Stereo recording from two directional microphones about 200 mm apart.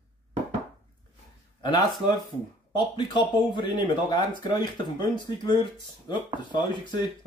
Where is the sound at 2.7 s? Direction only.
20° left (ahead or behind).